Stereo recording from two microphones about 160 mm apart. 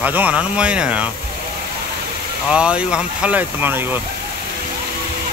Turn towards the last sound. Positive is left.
turn(degrees=-10)  # may be behind; listen again after turning